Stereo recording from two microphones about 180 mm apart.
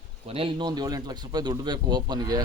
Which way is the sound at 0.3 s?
25° right (ahead or behind).